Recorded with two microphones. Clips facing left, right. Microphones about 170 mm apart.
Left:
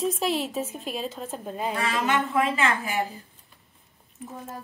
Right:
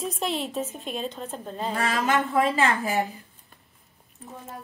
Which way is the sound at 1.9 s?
40° right (ahead or behind).